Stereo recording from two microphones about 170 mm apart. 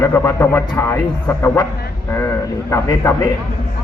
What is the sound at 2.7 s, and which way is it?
Speech, 15° left (ahead or behind).